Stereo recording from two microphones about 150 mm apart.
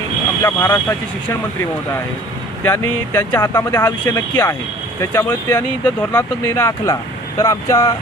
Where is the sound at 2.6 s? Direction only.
20° left (ahead or behind).